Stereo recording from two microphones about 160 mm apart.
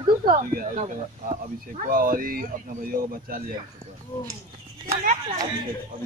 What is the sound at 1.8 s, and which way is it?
Speech, 60° right (ahead or behind).